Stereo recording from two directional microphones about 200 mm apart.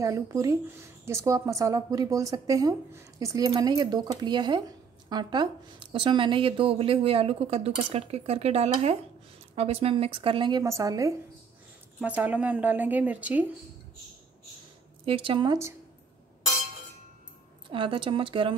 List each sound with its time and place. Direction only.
0.0 s a woman's voice: 15° right (ahead or behind)
15.0 s speech: 25° right (ahead or behind)
17.6 s speech: 25° right (ahead or behind)